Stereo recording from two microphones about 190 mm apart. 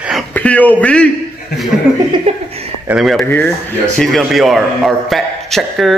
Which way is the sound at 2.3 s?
30° right (ahead or behind).